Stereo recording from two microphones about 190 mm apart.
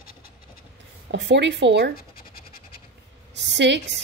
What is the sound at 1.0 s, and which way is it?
Speech, 65° right (ahead or behind).